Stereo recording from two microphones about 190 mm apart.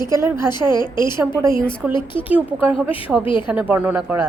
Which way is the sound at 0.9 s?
20° left (ahead or behind).